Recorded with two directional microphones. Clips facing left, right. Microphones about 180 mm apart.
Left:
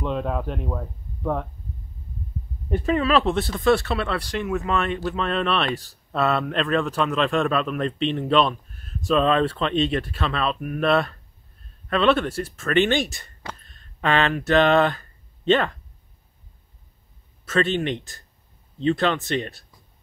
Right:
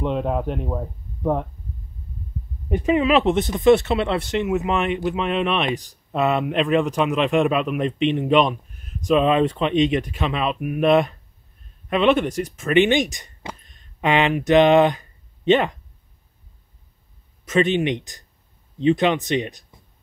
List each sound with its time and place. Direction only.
0.0 s speech: 20° right (ahead or behind)
2.7 s speech: 15° right (ahead or behind)
17.5 s speech: 15° right (ahead or behind)